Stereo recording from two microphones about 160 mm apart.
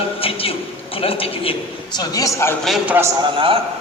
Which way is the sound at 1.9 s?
20° left (ahead or behind).